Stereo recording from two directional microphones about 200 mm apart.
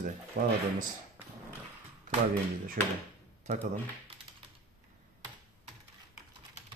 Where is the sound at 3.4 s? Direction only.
40° right (ahead or behind).